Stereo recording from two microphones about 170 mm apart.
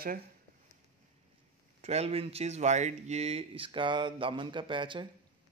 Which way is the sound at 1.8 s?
40° right (ahead or behind).